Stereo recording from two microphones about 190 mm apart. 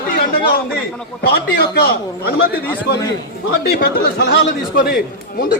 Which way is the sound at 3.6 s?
60° left (ahead or behind).